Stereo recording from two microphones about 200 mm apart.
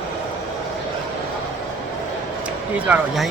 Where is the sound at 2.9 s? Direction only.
Centre (ahead or behind).